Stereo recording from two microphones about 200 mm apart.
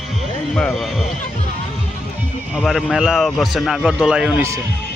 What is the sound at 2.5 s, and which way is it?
A man's voice, centre (ahead or behind).